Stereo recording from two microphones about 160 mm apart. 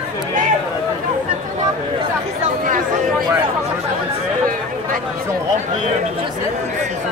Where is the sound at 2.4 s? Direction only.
55° right (ahead or behind).